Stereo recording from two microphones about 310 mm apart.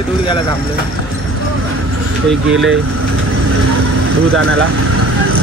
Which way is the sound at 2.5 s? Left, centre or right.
Right.